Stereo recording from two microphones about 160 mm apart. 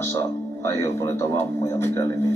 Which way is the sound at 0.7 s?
20° left (ahead or behind).